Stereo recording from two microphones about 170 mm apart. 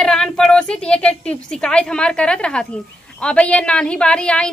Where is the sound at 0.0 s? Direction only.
5° left (ahead or behind).